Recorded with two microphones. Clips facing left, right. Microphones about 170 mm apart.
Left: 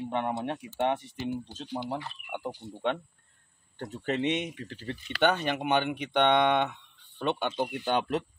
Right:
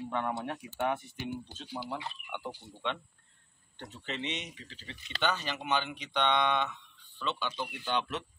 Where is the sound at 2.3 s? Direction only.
45° left (ahead or behind).